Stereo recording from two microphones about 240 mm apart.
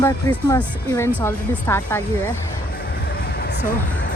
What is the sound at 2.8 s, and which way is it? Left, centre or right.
Music, left.